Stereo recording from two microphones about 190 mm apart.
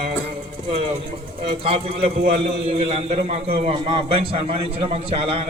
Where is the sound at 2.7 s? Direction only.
30° right (ahead or behind).